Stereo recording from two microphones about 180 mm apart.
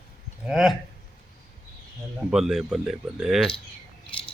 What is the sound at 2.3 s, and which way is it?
Speech, centre (ahead or behind).